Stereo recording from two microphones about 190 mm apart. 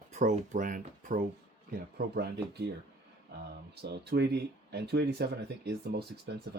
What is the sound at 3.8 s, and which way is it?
Speech, 60° right (ahead or behind).